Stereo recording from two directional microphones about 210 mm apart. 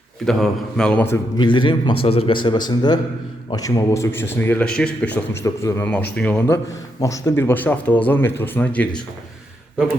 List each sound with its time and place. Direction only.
0.3 s a man's voice: centre (ahead or behind)
1.5 s a man's voice: 20° left (ahead or behind); by 8.9 s 5° left (ahead or behind)